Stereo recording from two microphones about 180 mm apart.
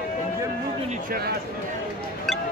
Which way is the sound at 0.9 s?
55° right (ahead or behind).